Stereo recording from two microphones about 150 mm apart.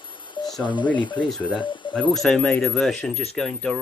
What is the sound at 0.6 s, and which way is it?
Speech, 30° left (ahead or behind).